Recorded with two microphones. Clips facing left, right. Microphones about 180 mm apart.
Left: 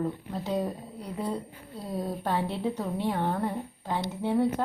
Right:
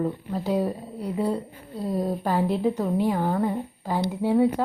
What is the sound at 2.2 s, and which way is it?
A woman's voice, 5° right (ahead or behind).